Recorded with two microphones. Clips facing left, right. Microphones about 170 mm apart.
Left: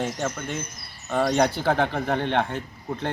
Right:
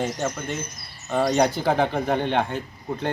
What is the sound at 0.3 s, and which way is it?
Speech, 10° right (ahead or behind).